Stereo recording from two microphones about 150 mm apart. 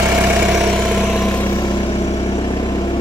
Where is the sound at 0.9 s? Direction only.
Centre (ahead or behind).